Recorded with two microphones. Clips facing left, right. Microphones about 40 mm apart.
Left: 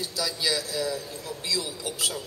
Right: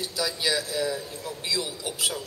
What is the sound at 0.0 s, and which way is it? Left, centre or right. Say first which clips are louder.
A man's voice: right 1 dB; right.